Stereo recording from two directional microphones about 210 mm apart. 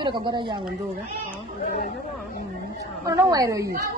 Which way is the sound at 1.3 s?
40° left (ahead or behind).